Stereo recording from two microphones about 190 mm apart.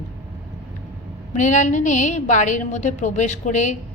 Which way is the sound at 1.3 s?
40° left (ahead or behind).